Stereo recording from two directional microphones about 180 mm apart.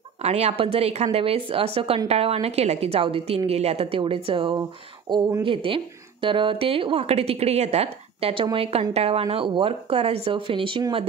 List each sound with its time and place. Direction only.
0.2 s a woman's voice: 35° right (ahead or behind)